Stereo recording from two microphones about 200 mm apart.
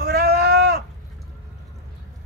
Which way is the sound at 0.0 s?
50° right (ahead or behind).